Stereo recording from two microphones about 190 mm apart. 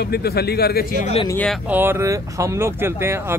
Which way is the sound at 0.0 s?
55° left (ahead or behind).